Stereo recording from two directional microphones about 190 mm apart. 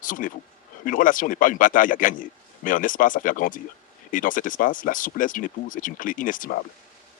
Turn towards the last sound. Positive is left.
turn(degrees=45)  # may be behind; listen again after turning